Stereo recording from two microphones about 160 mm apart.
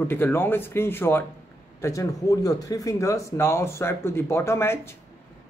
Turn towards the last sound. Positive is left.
turn(degrees=15)  # may be behind; listen again after turning